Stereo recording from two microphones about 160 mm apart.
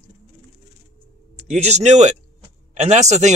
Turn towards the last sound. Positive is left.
turn(degrees=-50)  # may be behind; listen again after turning